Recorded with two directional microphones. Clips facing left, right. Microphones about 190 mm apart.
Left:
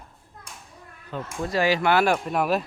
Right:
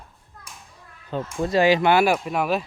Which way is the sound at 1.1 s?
30° right (ahead or behind).